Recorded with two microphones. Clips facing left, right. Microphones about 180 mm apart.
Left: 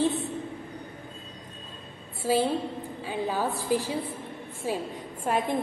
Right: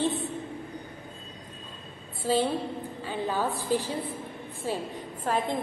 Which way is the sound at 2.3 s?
10° left (ahead or behind).